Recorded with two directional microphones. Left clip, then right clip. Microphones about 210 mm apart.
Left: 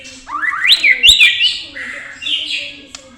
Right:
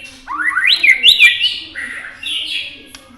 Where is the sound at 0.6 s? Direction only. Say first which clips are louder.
Left 1 dB; 15° right (ahead or behind).